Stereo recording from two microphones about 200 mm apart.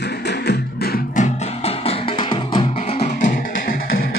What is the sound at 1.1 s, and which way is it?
Music, 30° left (ahead or behind).